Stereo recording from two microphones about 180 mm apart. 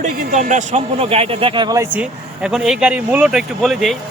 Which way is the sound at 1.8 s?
5° right (ahead or behind).